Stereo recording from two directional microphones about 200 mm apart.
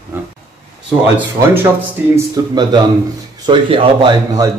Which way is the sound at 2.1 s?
20° right (ahead or behind).